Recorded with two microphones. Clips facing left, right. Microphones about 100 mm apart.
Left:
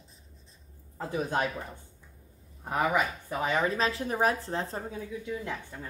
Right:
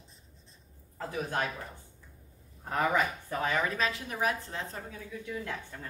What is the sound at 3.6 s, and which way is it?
Speech, 30° left (ahead or behind).